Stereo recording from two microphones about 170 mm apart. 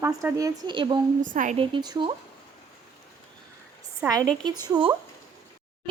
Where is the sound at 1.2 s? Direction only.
50° right (ahead or behind).